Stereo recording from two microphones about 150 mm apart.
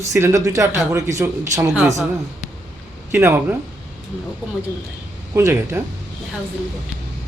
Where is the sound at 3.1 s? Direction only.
15° right (ahead or behind).